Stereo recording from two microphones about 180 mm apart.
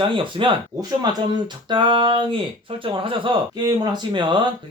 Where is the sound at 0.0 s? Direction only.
30° right (ahead or behind).